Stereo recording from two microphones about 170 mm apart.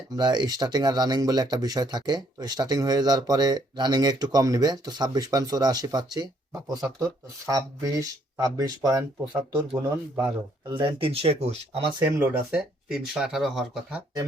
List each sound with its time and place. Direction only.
0.2 s speech: 25° right (ahead or behind)
10.7 s speech: 25° right (ahead or behind)
12.2 s speech: 10° right (ahead or behind)